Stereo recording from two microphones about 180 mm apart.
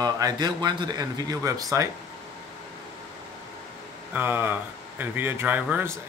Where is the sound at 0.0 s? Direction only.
20° right (ahead or behind).